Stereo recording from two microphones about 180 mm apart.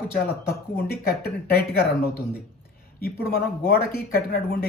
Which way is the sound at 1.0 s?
60° left (ahead or behind).